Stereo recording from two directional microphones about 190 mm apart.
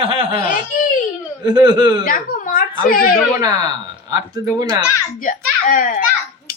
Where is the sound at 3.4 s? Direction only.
20° right (ahead or behind).